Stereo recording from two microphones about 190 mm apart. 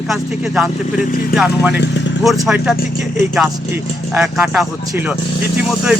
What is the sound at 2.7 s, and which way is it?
Speech, 45° left (ahead or behind).